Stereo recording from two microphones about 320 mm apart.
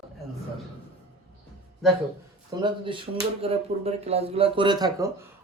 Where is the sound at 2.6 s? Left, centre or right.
Centre.